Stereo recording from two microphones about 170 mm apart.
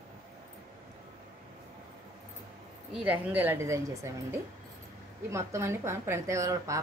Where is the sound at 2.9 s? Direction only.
10° right (ahead or behind).